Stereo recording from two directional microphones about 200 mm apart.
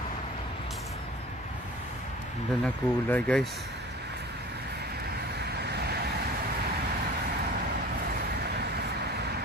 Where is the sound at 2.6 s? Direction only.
5° left (ahead or behind).